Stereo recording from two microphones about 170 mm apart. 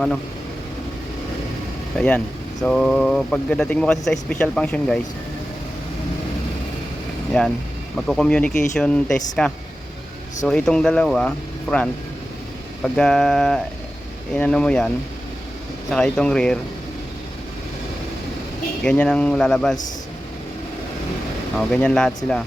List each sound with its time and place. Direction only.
2.0 s speech: 10° left (ahead or behind)
7.3 s speech: 5° left (ahead or behind)
15.9 s speech: 5° left (ahead or behind)
18.8 s speech: 5° left (ahead or behind)
21.5 s speech: 5° left (ahead or behind)